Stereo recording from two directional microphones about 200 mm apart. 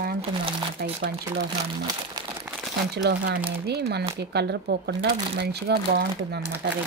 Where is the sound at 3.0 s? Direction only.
55° right (ahead or behind).